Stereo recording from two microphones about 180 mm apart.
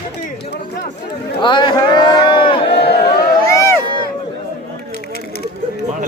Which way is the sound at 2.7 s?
65° left (ahead or behind).